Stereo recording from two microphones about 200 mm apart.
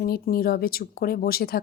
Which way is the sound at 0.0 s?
50° left (ahead or behind).